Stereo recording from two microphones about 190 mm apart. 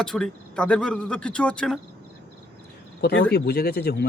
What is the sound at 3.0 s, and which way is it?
Speech, 60° left (ahead or behind).